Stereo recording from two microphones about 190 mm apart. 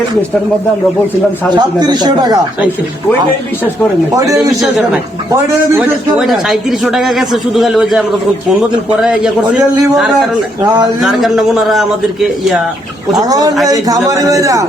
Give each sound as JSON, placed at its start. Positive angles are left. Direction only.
{"t": 1.5, "sound": "speech", "side_deg": -20}
{"t": 4.1, "sound": "a man's voice", "side_deg": -15}
{"t": 6.1, "sound": "speech", "side_deg": 0}
{"t": 13.1, "sound": "a man's voice", "side_deg": -20}